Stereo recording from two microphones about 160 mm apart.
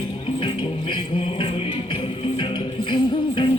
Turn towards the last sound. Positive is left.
turn(degrees=30)  # may be behind; listen again after turning